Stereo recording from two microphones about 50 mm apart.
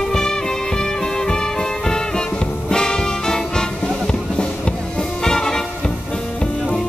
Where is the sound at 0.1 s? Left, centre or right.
Centre.